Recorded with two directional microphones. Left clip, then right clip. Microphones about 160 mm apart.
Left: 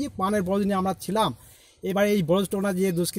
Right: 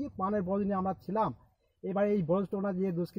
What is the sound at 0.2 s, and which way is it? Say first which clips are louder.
Speech: left 7 dB; 10° left (ahead or behind).